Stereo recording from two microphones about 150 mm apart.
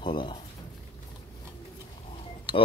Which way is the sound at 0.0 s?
35° left (ahead or behind).